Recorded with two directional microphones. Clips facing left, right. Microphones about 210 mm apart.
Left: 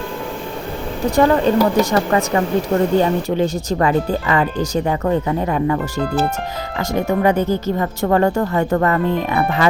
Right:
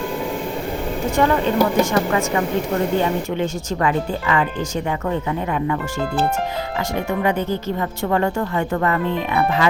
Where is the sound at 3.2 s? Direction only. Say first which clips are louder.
Left 4 dB; 35° left (ahead or behind).